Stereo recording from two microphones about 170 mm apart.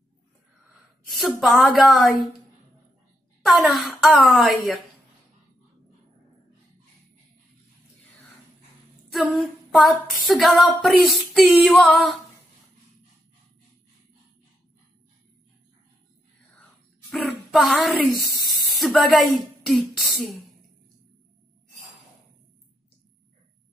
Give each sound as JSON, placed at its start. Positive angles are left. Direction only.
{"t": 1.0, "sound": "female singing", "side_deg": 0}
{"t": 3.4, "sound": "female singing", "side_deg": 0}
{"t": 9.1, "sound": "female singing", "side_deg": 0}
{"t": 17.1, "sound": "a sound", "side_deg": 0}
{"t": 18.2, "sound": "speech", "side_deg": 0}